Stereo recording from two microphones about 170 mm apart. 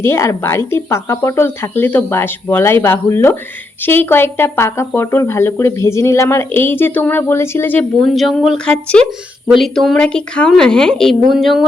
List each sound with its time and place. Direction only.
0.0 s speech: 15° left (ahead or behind)
8.1 s speech: centre (ahead or behind)